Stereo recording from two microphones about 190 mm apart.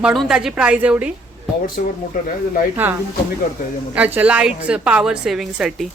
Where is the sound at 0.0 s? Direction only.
Centre (ahead or behind).